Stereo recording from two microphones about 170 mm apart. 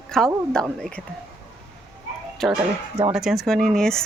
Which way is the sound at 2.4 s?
Centre (ahead or behind).